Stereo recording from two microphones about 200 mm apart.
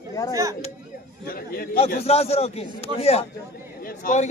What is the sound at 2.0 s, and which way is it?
A man's voice, 30° left (ahead or behind).